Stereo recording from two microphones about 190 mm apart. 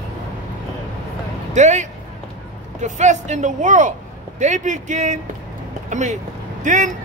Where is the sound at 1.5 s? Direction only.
40° right (ahead or behind).